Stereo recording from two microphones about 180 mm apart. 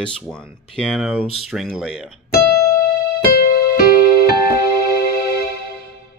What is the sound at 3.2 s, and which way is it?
Music, 55° left (ahead or behind).